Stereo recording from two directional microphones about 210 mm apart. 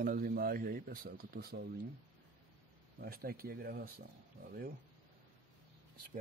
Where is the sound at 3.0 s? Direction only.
45° right (ahead or behind).